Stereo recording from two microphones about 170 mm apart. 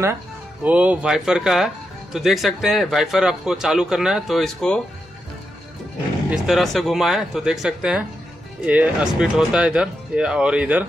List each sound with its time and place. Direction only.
0.7 s speech: 10° right (ahead or behind)
6.3 s speech: 5° right (ahead or behind)